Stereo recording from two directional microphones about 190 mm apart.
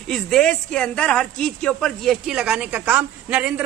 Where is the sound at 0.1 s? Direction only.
5° left (ahead or behind).